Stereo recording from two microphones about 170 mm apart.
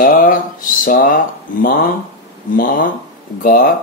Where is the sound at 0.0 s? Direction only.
55° left (ahead or behind).